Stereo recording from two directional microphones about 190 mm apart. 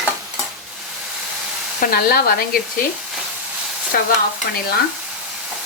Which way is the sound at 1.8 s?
50° left (ahead or behind).